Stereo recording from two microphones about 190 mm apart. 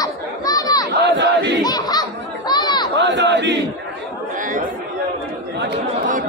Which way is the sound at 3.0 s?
65° right (ahead or behind).